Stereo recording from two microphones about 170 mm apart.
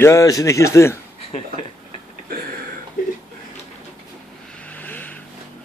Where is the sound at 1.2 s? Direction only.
40° left (ahead or behind).